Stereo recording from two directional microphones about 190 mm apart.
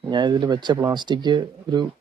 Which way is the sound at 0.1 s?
25° right (ahead or behind).